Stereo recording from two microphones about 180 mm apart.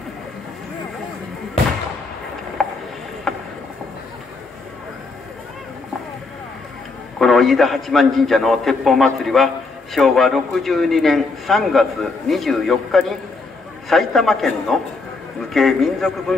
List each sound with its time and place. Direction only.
2.6 s a sound: centre (ahead or behind)
3.3 s boat: centre (ahead or behind)
7.2 s a man's voice: centre (ahead or behind)